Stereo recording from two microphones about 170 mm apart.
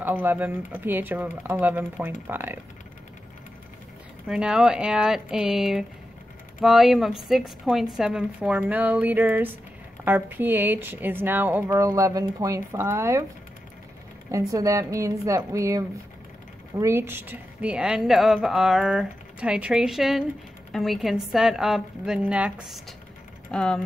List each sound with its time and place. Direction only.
0.0 s speech: 10° right (ahead or behind)
4.3 s a woman's voice: 5° right (ahead or behind)
14.5 s a woman's voice: 20° right (ahead or behind); by 23.8 s 5° left (ahead or behind)